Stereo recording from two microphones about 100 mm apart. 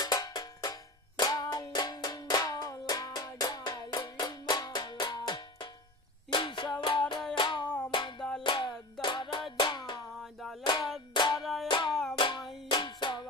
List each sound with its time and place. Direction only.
0.0 s music: 40° left (ahead or behind)
8.2 s music: 10° left (ahead or behind)
8.5 s music: 50° left (ahead or behind)